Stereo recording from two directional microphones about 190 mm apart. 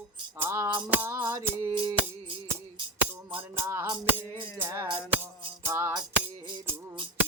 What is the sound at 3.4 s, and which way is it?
Music, 15° right (ahead or behind).